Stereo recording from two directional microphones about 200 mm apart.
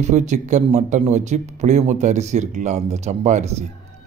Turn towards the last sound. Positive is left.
turn(degrees=-35)  # may be behind; listen again after turning